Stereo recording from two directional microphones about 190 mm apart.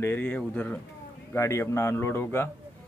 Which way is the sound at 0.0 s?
10° left (ahead or behind).